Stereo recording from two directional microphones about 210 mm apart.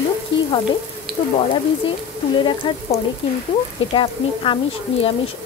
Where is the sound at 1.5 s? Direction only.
25° left (ahead or behind).